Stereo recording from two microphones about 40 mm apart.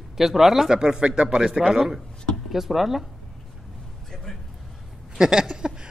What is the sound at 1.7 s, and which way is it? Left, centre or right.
Speech, centre.